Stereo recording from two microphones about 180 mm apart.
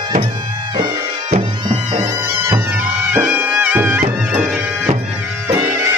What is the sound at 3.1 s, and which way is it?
Music, 10° right (ahead or behind).